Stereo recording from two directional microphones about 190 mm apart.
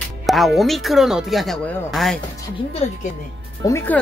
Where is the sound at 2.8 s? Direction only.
35° left (ahead or behind).